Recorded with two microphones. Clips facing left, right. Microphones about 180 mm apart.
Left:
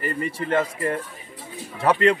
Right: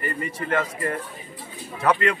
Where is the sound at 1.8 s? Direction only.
30° left (ahead or behind).